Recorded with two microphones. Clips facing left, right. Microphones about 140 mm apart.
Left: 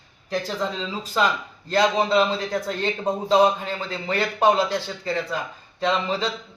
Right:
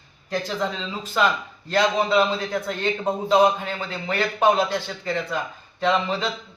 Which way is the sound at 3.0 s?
10° right (ahead or behind).